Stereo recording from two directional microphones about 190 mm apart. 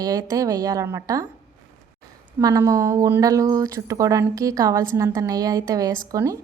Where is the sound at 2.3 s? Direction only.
20° right (ahead or behind).